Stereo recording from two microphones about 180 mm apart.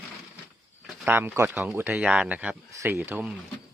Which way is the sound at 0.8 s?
10° right (ahead or behind).